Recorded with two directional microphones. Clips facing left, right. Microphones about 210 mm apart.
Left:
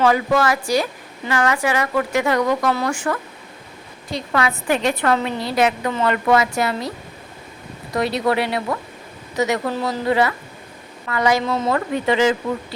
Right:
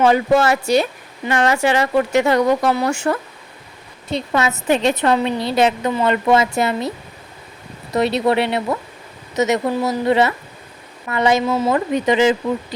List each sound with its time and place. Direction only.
0.0 s speech: 25° right (ahead or behind)
7.9 s speech: 25° right (ahead or behind)
11.4 s speech: 5° right (ahead or behind)
11.7 s speech: 20° right (ahead or behind)